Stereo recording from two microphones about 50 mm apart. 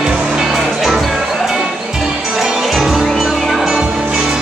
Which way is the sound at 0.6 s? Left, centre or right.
Centre.